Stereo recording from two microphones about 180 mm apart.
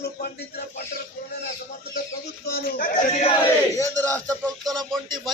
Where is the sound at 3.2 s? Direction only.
35° left (ahead or behind).